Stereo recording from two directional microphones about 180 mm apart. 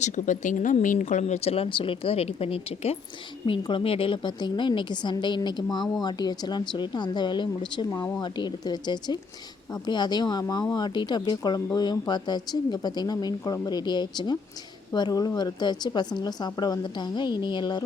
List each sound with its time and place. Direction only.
0.0 s speech: 45° left (ahead or behind); by 17.8 s 25° left (ahead or behind)